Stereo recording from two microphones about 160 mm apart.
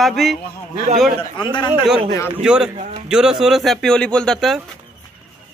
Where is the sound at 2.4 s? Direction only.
5° right (ahead or behind).